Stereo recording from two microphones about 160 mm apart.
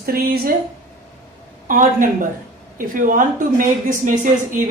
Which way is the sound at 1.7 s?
55° right (ahead or behind).